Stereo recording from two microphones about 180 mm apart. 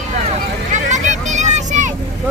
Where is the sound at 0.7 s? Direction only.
40° right (ahead or behind).